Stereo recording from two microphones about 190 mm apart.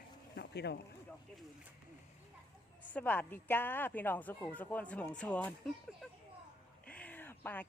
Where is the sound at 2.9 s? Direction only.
10° left (ahead or behind).